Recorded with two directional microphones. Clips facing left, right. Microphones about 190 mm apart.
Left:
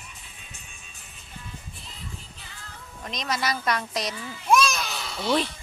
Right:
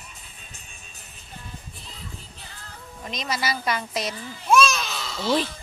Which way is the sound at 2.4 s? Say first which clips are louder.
Right 2 dB; 35° right (ahead or behind).